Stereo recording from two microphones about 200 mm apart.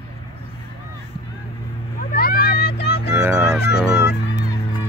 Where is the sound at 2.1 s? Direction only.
50° left (ahead or behind).